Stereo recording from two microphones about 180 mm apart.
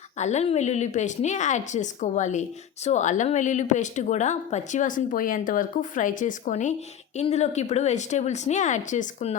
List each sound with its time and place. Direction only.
0.2 s a woman's voice: 40° left (ahead or behind)